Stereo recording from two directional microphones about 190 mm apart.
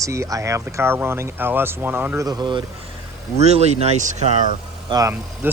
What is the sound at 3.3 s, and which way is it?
Speech, 35° right (ahead or behind).